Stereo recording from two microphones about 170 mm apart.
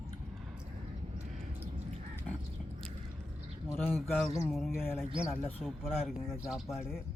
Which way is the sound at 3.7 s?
10° left (ahead or behind).